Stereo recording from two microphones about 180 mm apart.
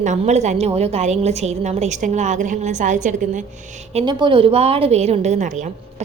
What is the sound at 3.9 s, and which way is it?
A woman's voice, 25° right (ahead or behind).